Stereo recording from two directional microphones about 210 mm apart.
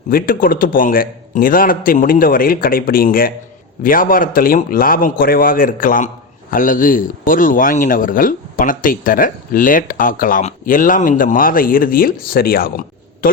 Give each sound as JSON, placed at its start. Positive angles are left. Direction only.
{"t": 0.1, "sound": "a man's voice", "side_deg": 40}